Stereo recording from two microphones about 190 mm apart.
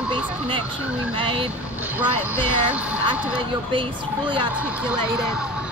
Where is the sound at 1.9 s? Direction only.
10° right (ahead or behind).